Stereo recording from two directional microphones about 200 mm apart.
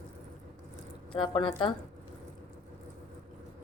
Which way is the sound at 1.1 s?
25° left (ahead or behind).